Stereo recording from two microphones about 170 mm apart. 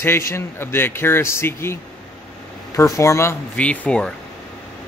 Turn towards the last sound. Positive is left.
turn(degrees=5)  # may be behind; listen again after turning